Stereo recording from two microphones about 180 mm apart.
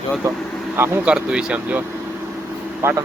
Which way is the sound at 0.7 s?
15° right (ahead or behind).